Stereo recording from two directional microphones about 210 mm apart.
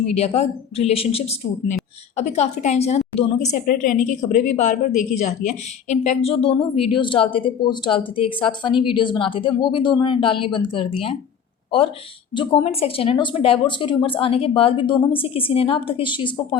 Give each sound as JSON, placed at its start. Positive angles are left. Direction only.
{"t": 0.2, "sound": "a woman's voice", "side_deg": 30}
{"t": 12.3, "sound": "a woman's voice", "side_deg": 20}